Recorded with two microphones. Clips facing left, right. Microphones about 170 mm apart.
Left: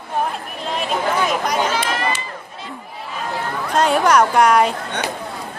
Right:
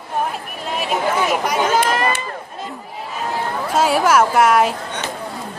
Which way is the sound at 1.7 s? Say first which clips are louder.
Right 4 dB; 45° right (ahead or behind).